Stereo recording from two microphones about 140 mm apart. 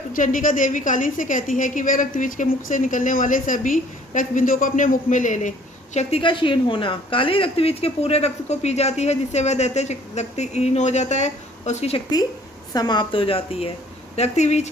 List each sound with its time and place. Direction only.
0.1 s a woman's voice: 70° left (ahead or behind); by 12.0 s 50° left (ahead or behind)
12.7 s a woman's voice: 30° left (ahead or behind); by 14.7 s 55° left (ahead or behind)